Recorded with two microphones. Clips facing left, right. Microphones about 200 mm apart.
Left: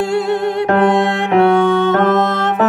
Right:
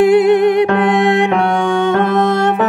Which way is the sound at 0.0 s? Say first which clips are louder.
Right 7 dB; 15° right (ahead or behind).